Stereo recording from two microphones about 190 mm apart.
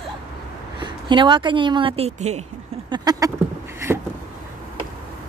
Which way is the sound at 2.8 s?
20° right (ahead or behind).